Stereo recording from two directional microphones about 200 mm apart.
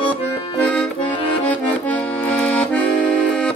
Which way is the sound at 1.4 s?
5° left (ahead or behind).